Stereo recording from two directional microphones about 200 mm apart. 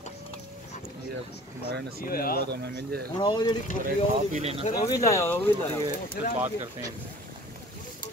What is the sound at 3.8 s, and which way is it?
Speech, 35° right (ahead or behind).